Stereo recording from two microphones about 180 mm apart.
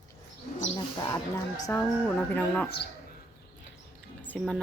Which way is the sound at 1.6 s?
10° left (ahead or behind).